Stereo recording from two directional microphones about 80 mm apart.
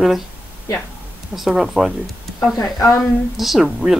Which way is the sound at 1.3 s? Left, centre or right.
Centre.